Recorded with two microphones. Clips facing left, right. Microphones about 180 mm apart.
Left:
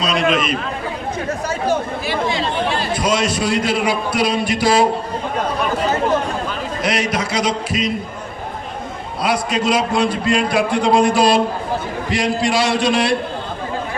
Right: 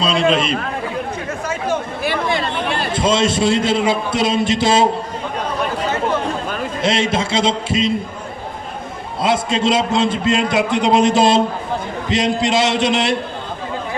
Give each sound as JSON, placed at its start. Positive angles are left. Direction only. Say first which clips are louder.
{"t": 0.0, "sound": "a man's voice", "louder": "right 2 dB", "side_deg": -30}
{"t": 1.3, "sound": "chatter", "louder": "left 4 dB", "side_deg": 40}
{"t": 2.0, "sound": "a sound", "louder": "right 2 dB", "side_deg": -55}
{"t": 2.9, "sound": "a man's voice", "louder": "right 5 dB", "side_deg": -25}
{"t": 6.8, "sound": "a man's voice", "louder": "right 2 dB", "side_deg": -25}
{"t": 9.2, "sound": "a man's voice", "louder": "right 2 dB", "side_deg": -25}